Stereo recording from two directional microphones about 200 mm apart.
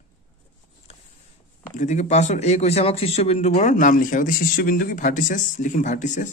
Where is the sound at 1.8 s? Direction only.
35° left (ahead or behind).